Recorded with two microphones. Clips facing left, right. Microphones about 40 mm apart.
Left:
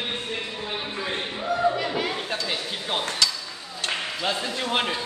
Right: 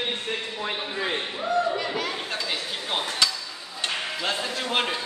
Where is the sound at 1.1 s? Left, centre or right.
Centre.